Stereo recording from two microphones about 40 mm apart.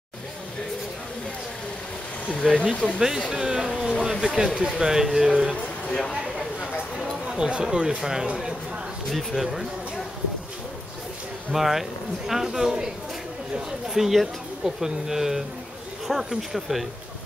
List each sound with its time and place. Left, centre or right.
2.5 s speech: left
3.3 s speech: centre
3.8 s speech: centre
4.6 s speech: centre
5.9 s speech: left
7.3 s speech: right; by 9.7 s centre
11.5 s speech: centre
13.8 s speech: centre